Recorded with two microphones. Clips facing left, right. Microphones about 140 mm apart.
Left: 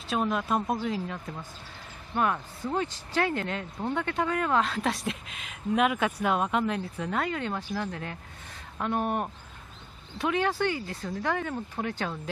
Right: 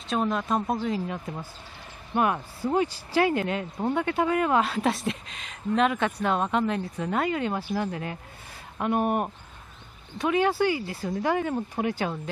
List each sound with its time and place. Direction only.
0.1 s speech: centre (ahead or behind)
1.1 s speech: 15° right (ahead or behind)